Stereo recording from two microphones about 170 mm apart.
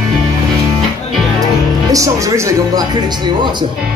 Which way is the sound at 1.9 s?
20° right (ahead or behind).